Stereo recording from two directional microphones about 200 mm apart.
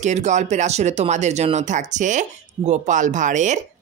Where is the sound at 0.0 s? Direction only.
35° right (ahead or behind).